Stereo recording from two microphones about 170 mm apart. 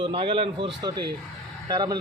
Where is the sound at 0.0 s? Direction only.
30° right (ahead or behind).